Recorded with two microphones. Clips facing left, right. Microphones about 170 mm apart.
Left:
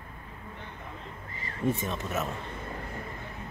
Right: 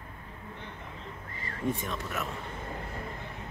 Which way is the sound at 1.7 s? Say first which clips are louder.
Left 3 dB; 20° left (ahead or behind).